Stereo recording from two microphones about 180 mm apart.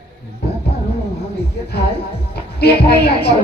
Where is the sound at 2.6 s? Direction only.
60° left (ahead or behind).